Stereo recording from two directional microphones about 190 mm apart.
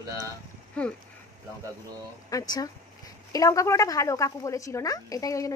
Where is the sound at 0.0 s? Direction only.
20° right (ahead or behind).